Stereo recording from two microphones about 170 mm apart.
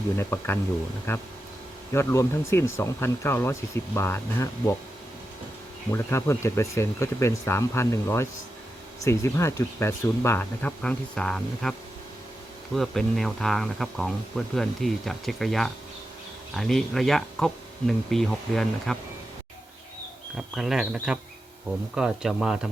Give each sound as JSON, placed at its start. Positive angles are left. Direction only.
{"t": 0.2, "sound": "speech", "side_deg": 15}
{"t": 5.9, "sound": "speech", "side_deg": 15}
{"t": 12.7, "sound": "speech", "side_deg": 0}
{"t": 20.3, "sound": "speech", "side_deg": -5}